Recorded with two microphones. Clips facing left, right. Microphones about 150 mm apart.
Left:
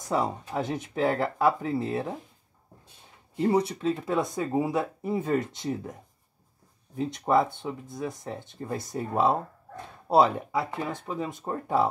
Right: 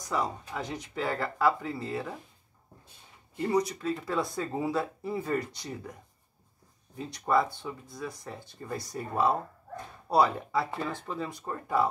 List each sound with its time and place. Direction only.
0.1 s speech: 25° left (ahead or behind)
3.3 s speech: 30° left (ahead or behind)
7.0 s speech: 20° left (ahead or behind)